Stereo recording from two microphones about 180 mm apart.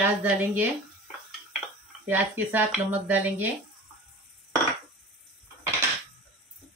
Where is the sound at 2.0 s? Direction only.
10° right (ahead or behind).